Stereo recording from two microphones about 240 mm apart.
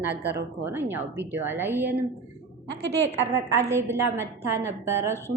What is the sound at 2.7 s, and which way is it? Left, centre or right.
Speech, right.